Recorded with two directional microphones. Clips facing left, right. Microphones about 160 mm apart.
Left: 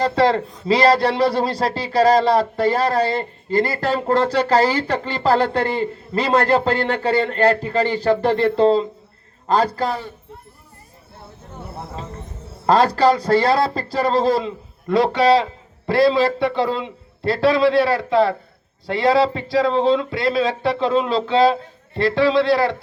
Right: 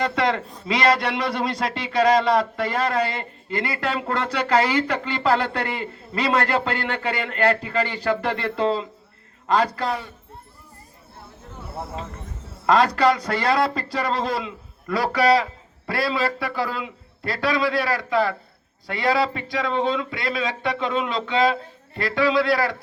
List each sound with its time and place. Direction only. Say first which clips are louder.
0.0 s a man's voice: left 5 dB; 30° left (ahead or behind)
12.6 s a man's voice: left 3 dB; 30° left (ahead or behind)